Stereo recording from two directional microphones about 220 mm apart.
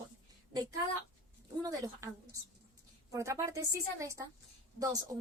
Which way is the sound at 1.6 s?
15° right (ahead or behind).